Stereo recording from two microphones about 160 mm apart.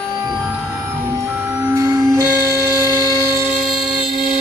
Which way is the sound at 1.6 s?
20° right (ahead or behind).